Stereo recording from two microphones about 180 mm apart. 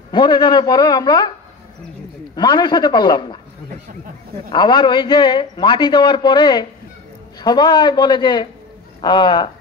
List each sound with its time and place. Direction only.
0.1 s a man's voice: 25° left (ahead or behind)
2.3 s a man's voice: 25° left (ahead or behind)
4.5 s a man's voice: 25° left (ahead or behind)